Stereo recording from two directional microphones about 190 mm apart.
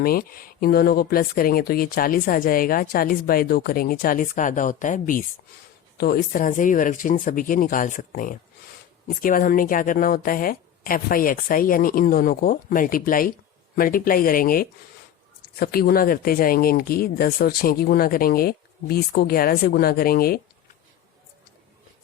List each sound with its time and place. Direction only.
0.0 s speech: 50° left (ahead or behind)